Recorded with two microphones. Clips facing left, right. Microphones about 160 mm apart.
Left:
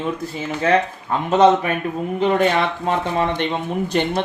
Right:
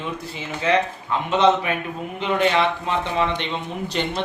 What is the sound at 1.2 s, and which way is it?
A man's voice, 45° left (ahead or behind).